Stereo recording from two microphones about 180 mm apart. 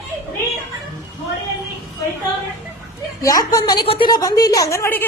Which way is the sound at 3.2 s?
20° left (ahead or behind).